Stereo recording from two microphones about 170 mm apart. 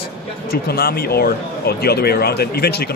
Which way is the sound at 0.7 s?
60° left (ahead or behind).